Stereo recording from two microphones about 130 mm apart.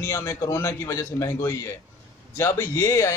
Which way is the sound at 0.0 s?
25° left (ahead or behind).